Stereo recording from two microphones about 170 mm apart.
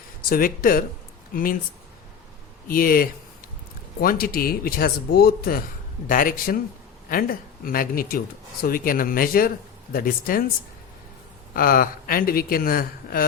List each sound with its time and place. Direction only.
0.3 s speech: 55° left (ahead or behind)
2.6 s speech: 55° left (ahead or behind)
11.5 s speech: 55° left (ahead or behind)